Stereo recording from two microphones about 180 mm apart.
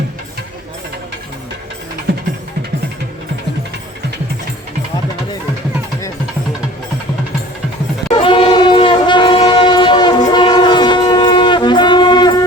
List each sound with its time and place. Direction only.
8.1 s train: 30° left (ahead or behind)